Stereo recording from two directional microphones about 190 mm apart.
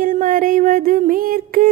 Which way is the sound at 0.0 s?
45° right (ahead or behind).